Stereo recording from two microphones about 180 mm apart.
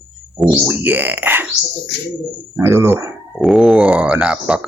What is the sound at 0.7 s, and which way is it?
Speech, 10° right (ahead or behind).